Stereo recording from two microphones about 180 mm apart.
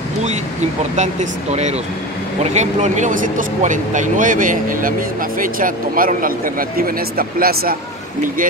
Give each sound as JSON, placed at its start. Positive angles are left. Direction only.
{"t": 0.9, "sound": "speech", "side_deg": -40}